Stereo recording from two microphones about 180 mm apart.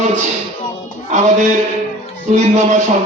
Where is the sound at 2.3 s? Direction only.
40° right (ahead or behind).